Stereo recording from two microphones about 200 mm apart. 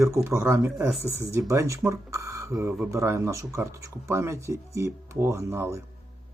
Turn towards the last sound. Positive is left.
turn(degrees=-15)  # may be behind; listen again after turning